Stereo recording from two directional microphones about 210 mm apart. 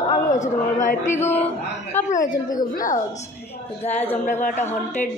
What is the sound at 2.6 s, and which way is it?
Speech, 40° left (ahead or behind).